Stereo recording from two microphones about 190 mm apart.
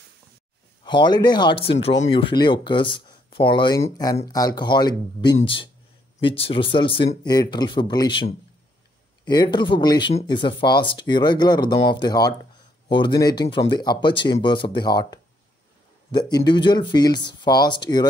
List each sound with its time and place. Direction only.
0.8 s speech: 25° left (ahead or behind)